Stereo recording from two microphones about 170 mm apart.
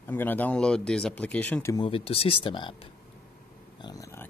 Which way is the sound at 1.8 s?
35° left (ahead or behind).